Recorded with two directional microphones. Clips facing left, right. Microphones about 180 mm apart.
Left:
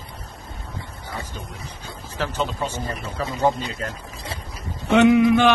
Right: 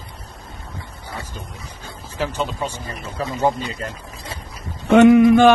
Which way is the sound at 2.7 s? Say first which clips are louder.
Left 3 dB; 50° left (ahead or behind).